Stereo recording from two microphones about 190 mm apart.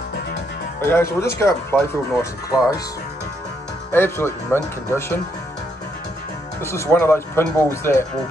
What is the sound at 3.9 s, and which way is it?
Speech, 10° left (ahead or behind).